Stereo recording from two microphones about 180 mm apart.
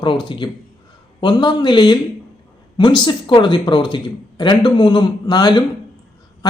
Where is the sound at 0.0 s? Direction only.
25° left (ahead or behind).